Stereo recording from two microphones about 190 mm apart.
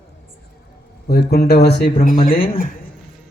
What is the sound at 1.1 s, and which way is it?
Speech, 55° left (ahead or behind).